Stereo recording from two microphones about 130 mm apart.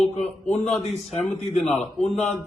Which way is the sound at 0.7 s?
55° left (ahead or behind).